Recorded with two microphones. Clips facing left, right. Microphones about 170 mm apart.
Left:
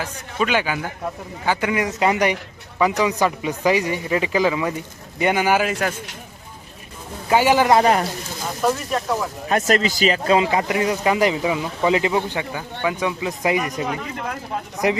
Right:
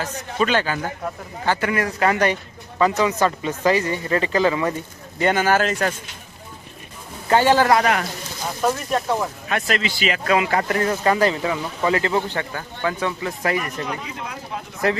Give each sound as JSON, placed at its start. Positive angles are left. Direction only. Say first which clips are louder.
{"t": 0.0, "sound": "speech", "louder": "right 1 dB", "side_deg": 10}
{"t": 7.3, "sound": "speech", "louder": "even", "side_deg": 10}
{"t": 7.8, "sound": "a man's voice", "louder": "left 3 dB", "side_deg": 30}
{"t": 8.6, "sound": "speech", "louder": "left 1 dB", "side_deg": 0}
{"t": 9.5, "sound": "a man's voice", "louder": "left 7 dB", "side_deg": 40}
{"t": 10.5, "sound": "speech", "louder": "left 1 dB", "side_deg": 15}
{"t": 14.0, "sound": "speech", "louder": "left 4 dB", "side_deg": 50}
{"t": 14.8, "sound": "speech", "louder": "left 1 dB", "side_deg": 15}